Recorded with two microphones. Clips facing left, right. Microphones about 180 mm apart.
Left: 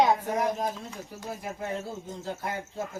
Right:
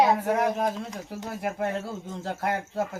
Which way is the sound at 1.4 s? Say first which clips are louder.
Right 7 dB; 65° right (ahead or behind).